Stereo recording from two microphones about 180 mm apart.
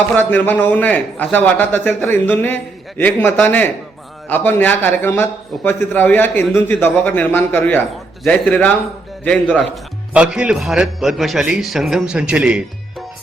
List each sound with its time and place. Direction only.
0.1 s a man's voice: 10° left (ahead or behind)
10.1 s a man's voice: 5° right (ahead or behind)